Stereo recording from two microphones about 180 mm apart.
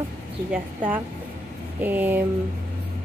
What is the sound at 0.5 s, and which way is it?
A woman's voice, 10° right (ahead or behind).